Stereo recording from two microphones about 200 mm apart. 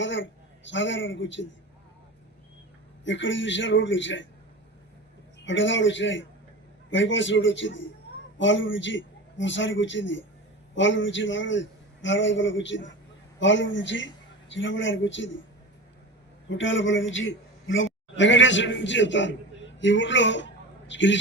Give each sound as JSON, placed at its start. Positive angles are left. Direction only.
{"t": 0.0, "sound": "a man's voice", "side_deg": 65}
{"t": 3.0, "sound": "a man's voice", "side_deg": 70}
{"t": 5.5, "sound": "a man's voice", "side_deg": 70}
{"t": 16.5, "sound": "a man's voice", "side_deg": 70}